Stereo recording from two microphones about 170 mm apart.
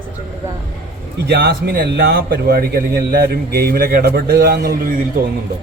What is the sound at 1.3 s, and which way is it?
A man's voice, 75° right (ahead or behind).